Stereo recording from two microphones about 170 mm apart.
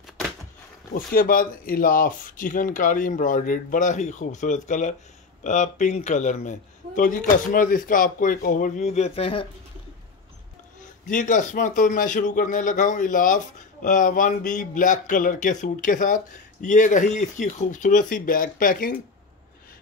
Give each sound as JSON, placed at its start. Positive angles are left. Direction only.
{"t": 0.9, "sound": "speech", "side_deg": 55}
{"t": 10.8, "sound": "speech", "side_deg": 50}